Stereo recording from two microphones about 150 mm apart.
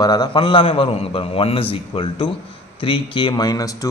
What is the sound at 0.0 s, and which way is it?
Speech, 25° left (ahead or behind).